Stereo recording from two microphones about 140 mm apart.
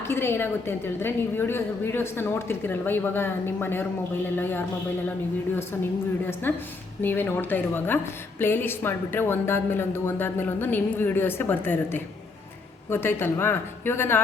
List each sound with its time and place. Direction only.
0.0 s a woman's voice: 15° left (ahead or behind)
6.5 s a woman's voice: 15° left (ahead or behind)